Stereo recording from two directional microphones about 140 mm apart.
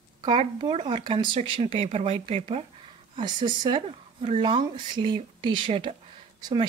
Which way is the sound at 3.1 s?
35° right (ahead or behind).